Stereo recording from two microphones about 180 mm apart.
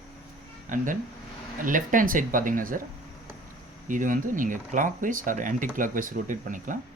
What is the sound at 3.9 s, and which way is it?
Speech, 45° right (ahead or behind).